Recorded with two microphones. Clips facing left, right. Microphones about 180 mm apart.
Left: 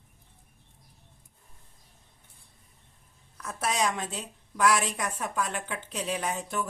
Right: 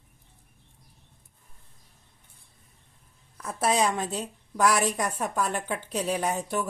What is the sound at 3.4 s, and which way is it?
A woman's voice, 30° right (ahead or behind).